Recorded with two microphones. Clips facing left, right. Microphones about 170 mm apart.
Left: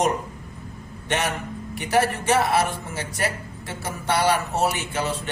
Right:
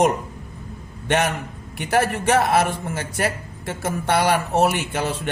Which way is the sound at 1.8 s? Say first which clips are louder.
Right 1 dB; 55° right (ahead or behind).